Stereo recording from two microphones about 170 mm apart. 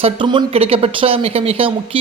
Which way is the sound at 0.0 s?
30° right (ahead or behind).